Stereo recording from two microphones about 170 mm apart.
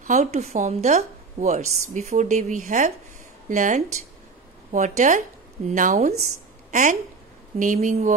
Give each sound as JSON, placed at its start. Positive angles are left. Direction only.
{"t": 0.0, "sound": "a woman's voice", "side_deg": -45}